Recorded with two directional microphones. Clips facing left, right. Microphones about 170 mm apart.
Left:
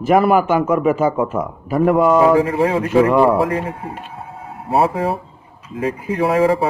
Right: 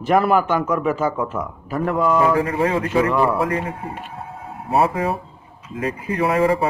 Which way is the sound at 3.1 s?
35° left (ahead or behind).